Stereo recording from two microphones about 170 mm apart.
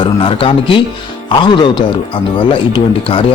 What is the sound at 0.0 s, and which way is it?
Speech, 30° left (ahead or behind).